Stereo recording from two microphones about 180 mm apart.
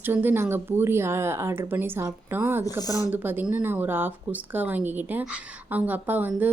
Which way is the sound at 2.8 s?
20° left (ahead or behind).